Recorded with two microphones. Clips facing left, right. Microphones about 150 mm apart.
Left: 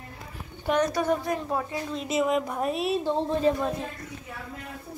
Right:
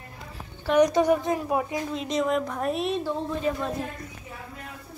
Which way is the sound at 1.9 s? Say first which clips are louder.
Left 3 dB; 5° left (ahead or behind).